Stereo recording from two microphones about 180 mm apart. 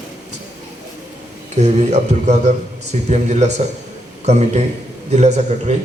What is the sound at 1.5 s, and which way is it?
A man's voice, 40° right (ahead or behind).